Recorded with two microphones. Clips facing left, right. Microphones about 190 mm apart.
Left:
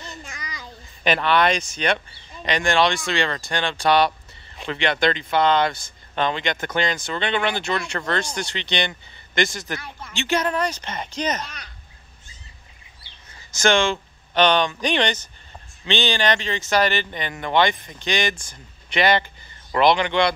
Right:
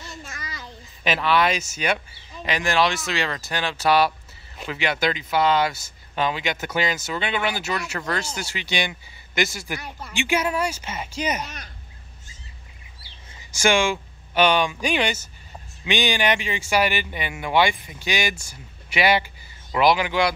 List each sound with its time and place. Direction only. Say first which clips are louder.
0.2 s child singing: even; 15° left (ahead or behind)
1.0 s speech: left 2 dB; 5° right (ahead or behind)
13.5 s speech: left 1 dB; 10° right (ahead or behind)